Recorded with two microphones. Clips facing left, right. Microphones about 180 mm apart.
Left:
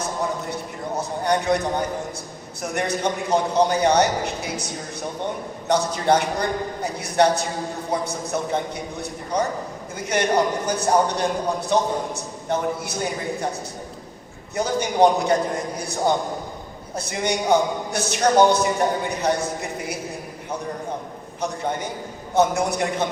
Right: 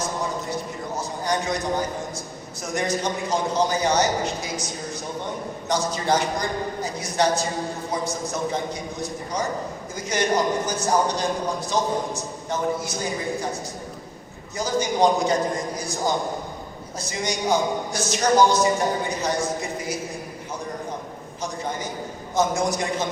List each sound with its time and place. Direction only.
0.5 s a sound: 60° left (ahead or behind)
2.6 s a man's voice: 60° left (ahead or behind)
14.5 s a man's voice: 60° left (ahead or behind)
21.4 s a man's voice: 60° left (ahead or behind)